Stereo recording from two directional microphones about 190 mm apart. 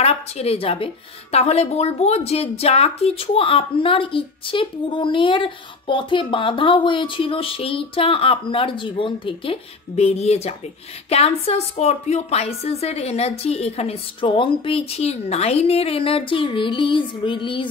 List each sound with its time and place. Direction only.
0.0 s a woman's voice: 35° left (ahead or behind)